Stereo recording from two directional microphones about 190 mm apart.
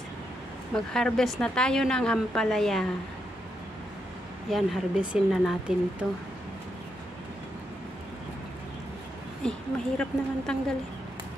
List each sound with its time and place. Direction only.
0.7 s a woman's voice: 5° left (ahead or behind)
4.5 s a woman's voice: 5° right (ahead or behind)
9.4 s a woman's voice: 5° left (ahead or behind)